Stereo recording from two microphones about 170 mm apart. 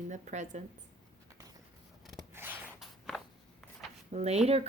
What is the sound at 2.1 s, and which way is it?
Scissors, 15° right (ahead or behind).